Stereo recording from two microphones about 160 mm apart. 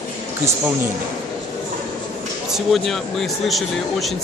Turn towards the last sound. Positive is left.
turn(degrees=0)  # may be behind; listen again after turning